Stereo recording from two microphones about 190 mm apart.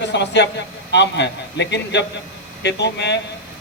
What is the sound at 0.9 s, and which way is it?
A man's voice, 65° left (ahead or behind).